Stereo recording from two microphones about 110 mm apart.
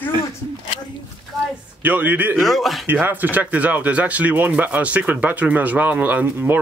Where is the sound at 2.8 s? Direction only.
15° right (ahead or behind).